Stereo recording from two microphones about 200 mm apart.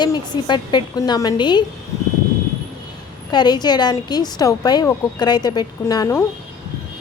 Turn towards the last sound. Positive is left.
turn(degrees=20)  # may be behind; listen again after turning